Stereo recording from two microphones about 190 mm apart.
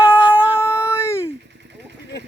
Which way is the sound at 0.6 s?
15° left (ahead or behind).